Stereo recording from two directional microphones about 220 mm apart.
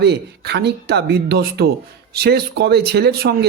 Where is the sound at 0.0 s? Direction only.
50° right (ahead or behind).